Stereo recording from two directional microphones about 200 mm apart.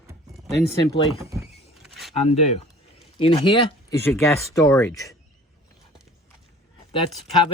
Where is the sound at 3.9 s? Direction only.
15° left (ahead or behind).